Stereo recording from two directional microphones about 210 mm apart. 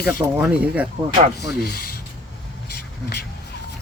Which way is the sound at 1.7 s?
45° left (ahead or behind).